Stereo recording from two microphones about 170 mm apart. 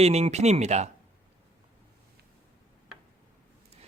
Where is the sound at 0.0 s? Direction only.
40° right (ahead or behind).